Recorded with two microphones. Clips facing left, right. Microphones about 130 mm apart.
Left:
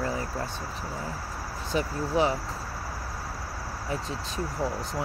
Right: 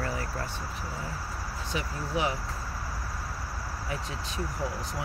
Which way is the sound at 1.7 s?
30° left (ahead or behind).